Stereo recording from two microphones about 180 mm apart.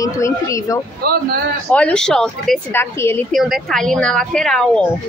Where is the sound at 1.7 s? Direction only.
5° left (ahead or behind).